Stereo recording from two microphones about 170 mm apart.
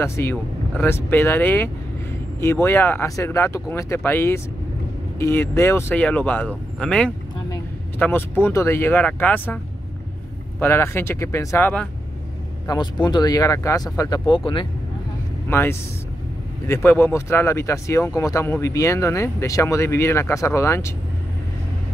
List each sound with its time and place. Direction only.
0.0 s speech: 15° left (ahead or behind)
10.6 s speech: 15° left (ahead or behind)
12.6 s speech: 25° left (ahead or behind)
15.5 s speech: 15° left (ahead or behind)